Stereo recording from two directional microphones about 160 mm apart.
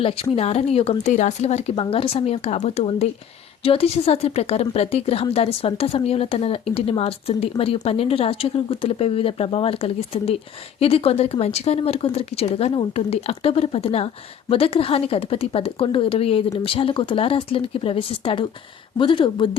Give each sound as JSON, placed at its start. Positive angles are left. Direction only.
{"t": 0.0, "sound": "speech", "side_deg": 35}